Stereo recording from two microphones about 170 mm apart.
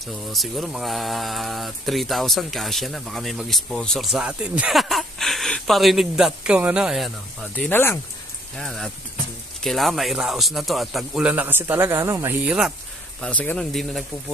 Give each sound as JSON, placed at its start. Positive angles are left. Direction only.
{"t": 0.0, "sound": "speech", "side_deg": 0}
{"t": 7.5, "sound": "speech", "side_deg": 10}
{"t": 8.5, "sound": "speech", "side_deg": 5}
{"t": 12.4, "sound": "speech", "side_deg": -5}
{"t": 13.2, "sound": "speech", "side_deg": 10}